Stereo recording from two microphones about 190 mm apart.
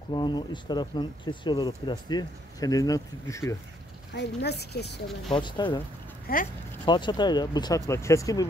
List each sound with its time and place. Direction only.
0.1 s speech: 20° left (ahead or behind)
4.1 s a woman's voice: 65° left (ahead or behind)
5.3 s speech: 25° left (ahead or behind)
6.3 s speech: 50° left (ahead or behind)
6.9 s speech: 25° left (ahead or behind)